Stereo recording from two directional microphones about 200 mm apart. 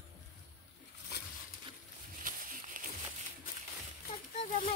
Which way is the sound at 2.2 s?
45° right (ahead or behind).